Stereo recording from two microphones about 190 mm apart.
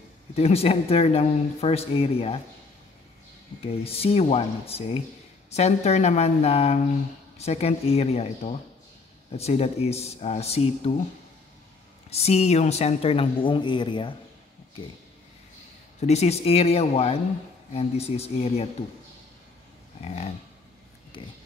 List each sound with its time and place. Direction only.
0.4 s speech: 30° left (ahead or behind)
3.6 s speech: 30° left (ahead or behind)
12.1 s speech: 35° left (ahead or behind)
16.0 s speech: 35° left (ahead or behind)
21.2 s speech: 25° left (ahead or behind)